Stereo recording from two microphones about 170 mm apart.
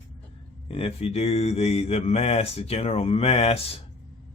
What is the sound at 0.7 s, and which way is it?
Mantra, 35° left (ahead or behind).